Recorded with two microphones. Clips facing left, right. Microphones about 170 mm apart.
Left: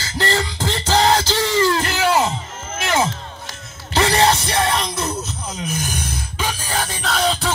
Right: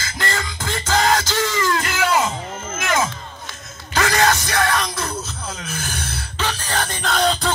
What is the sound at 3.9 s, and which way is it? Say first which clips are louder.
Music: left 2 dB; 25° left (ahead or behind).